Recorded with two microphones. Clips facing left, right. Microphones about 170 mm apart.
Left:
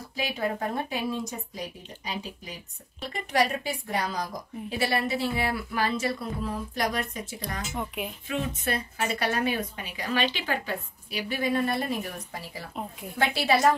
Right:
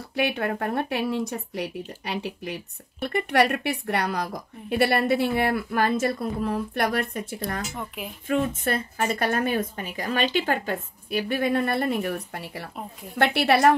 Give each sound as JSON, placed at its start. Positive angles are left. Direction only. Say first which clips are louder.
{"t": 0.1, "sound": "speech", "louder": "right 4 dB", "side_deg": -65}
{"t": 7.7, "sound": "speech", "louder": "left 2 dB", "side_deg": 0}
{"t": 8.3, "sound": "speech", "louder": "right 7 dB", "side_deg": -50}